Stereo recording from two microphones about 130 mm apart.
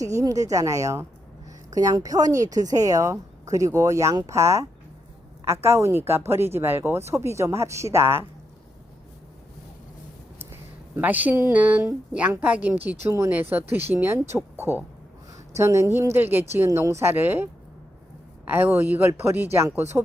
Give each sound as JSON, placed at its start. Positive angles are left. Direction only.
{"t": 0.0, "sound": "a woman's voice", "side_deg": -25}
{"t": 10.9, "sound": "a woman's voice", "side_deg": -10}